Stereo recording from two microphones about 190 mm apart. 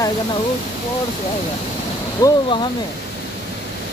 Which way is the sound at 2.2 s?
20° left (ahead or behind).